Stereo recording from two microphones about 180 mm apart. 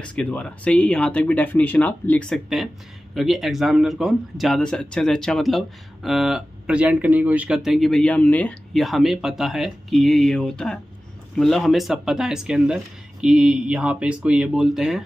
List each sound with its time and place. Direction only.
0.0 s speech: 5° left (ahead or behind)